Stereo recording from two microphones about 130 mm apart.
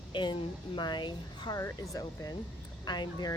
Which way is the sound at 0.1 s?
35° left (ahead or behind).